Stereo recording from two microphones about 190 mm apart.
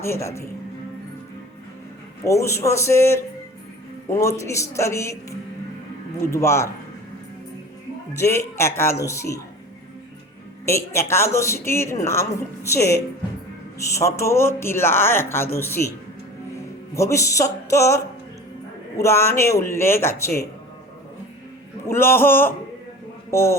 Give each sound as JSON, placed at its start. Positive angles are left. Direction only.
{"t": 0.0, "sound": "speech", "side_deg": 15}
{"t": 2.2, "sound": "speech", "side_deg": 15}
{"t": 6.2, "sound": "speech", "side_deg": 15}
{"t": 8.2, "sound": "speech", "side_deg": 15}
{"t": 10.7, "sound": "speech", "side_deg": 15}
{"t": 16.9, "sound": "speech", "side_deg": 15}
{"t": 21.8, "sound": "speech", "side_deg": 10}